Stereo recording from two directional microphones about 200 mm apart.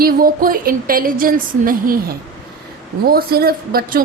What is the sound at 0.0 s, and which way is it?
A woman's voice, 45° right (ahead or behind).